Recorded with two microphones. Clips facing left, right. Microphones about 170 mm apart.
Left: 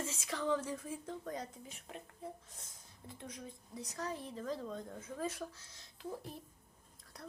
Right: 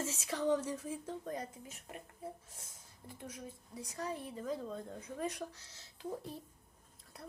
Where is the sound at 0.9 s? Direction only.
30° right (ahead or behind).